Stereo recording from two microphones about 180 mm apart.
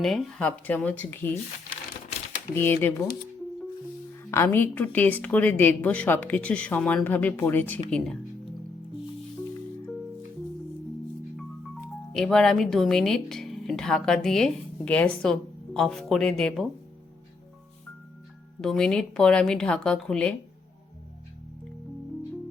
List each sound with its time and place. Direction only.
0.0 s a woman's voice: centre (ahead or behind)
2.6 s a woman's voice: 10° left (ahead or behind)
4.3 s a woman's voice: 15° left (ahead or behind)
12.1 s speech: centre (ahead or behind)
18.6 s speech: 5° left (ahead or behind)